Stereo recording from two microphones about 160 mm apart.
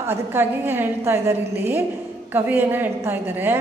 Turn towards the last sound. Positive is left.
turn(degrees=-15)  # may be behind; listen again after turning